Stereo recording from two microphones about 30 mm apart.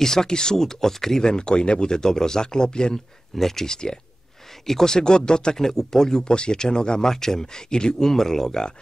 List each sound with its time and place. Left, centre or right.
0.0 s speech: centre
1.2 s speech: left
3.3 s speech: centre
3.6 s speech: left
4.6 s speech: centre
4.9 s speech: left
5.6 s speech: centre
6.2 s speech: left
7.1 s speech: centre